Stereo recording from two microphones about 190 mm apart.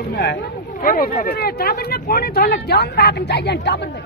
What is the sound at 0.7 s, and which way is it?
Speech, 50° left (ahead or behind).